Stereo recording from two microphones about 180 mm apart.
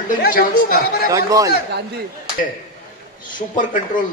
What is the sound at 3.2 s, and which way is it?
Speech, 45° left (ahead or behind).